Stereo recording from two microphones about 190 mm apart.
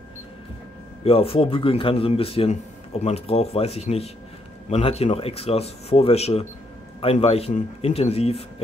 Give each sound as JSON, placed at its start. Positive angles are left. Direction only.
{"t": 1.0, "sound": "speech", "side_deg": 30}